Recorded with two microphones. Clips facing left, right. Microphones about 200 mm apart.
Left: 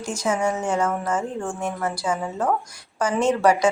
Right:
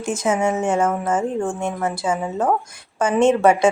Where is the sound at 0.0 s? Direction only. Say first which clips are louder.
Right 3 dB; 25° right (ahead or behind).